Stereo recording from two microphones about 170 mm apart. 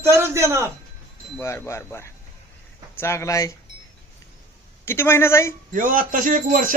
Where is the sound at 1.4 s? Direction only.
15° left (ahead or behind).